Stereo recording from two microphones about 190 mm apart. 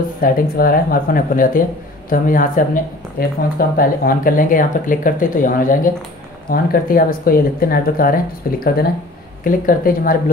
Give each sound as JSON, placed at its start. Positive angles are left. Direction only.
{"t": 0.2, "sound": "speech", "side_deg": 50}